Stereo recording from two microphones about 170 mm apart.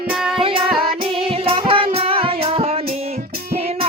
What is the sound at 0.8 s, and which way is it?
Music, 35° right (ahead or behind).